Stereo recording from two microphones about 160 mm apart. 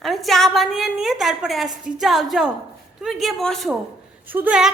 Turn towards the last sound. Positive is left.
turn(degrees=-5)  # may be behind; listen again after turning